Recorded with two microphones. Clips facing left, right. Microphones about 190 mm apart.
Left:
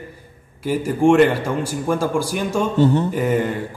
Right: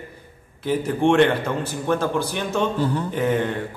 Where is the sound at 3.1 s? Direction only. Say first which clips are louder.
Left 2 dB; 5° left (ahead or behind).